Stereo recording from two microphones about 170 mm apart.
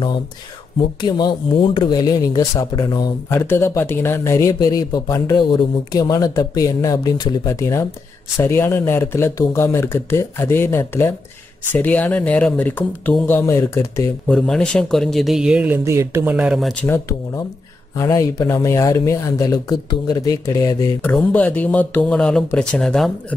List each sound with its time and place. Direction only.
1.0 s speech: 25° left (ahead or behind)
14.2 s speech: 5° left (ahead or behind)
17.9 s speech: 15° left (ahead or behind); by 23.1 s centre (ahead or behind)